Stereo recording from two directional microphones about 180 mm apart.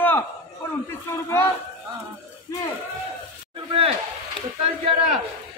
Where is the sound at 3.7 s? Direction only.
35° right (ahead or behind).